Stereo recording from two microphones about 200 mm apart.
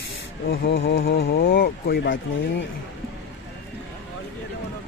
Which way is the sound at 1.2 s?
50° left (ahead or behind).